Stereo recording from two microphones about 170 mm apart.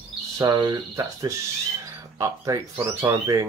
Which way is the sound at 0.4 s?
25° right (ahead or behind).